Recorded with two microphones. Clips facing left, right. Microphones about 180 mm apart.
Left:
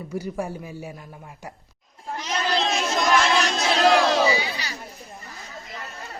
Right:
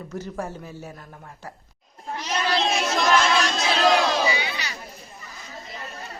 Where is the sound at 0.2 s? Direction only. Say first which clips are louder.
Left 2 dB; 10° left (ahead or behind).